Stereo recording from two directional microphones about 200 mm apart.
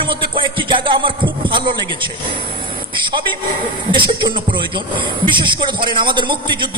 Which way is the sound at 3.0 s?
25° right (ahead or behind).